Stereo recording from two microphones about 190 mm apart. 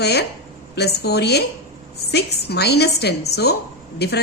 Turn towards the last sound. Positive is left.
turn(degrees=60)  # may be behind; listen again after turning